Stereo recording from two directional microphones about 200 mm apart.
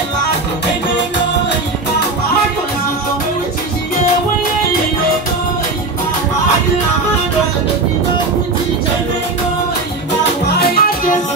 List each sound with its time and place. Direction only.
10.6 s music: 45° left (ahead or behind)